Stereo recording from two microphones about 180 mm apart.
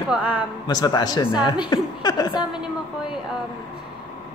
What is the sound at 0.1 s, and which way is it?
Speech, 5° right (ahead or behind).